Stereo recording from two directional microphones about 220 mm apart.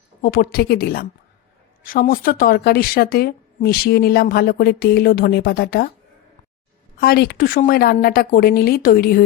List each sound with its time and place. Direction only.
0.2 s speech: 40° left (ahead or behind)
7.0 s speech: 45° left (ahead or behind)